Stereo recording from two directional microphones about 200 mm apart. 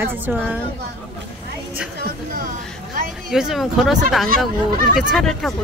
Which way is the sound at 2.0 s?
45° right (ahead or behind).